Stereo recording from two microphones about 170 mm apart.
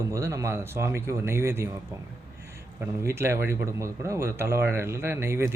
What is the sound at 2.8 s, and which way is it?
A man's voice, 15° right (ahead or behind).